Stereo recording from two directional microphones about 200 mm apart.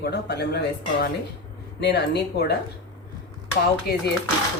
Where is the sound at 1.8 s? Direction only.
60° left (ahead or behind).